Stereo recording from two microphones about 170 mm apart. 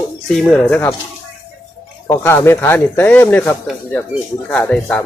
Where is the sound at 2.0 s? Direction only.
15° left (ahead or behind).